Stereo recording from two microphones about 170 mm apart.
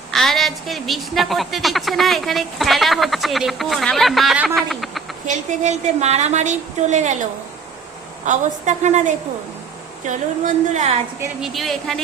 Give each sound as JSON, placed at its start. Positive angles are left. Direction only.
{"t": 0.1, "sound": "a woman's voice", "side_deg": 0}
{"t": 5.2, "sound": "speech", "side_deg": -45}
{"t": 11.3, "sound": "a woman's voice", "side_deg": 0}